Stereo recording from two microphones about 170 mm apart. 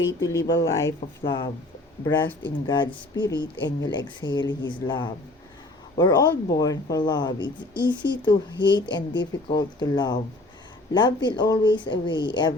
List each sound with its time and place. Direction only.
0.6 s speech: 20° left (ahead or behind)
2.0 s speech: 10° left (ahead or behind)
2.4 s speech: 25° left (ahead or behind)